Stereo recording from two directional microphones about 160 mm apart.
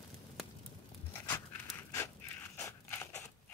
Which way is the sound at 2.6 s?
15° left (ahead or behind).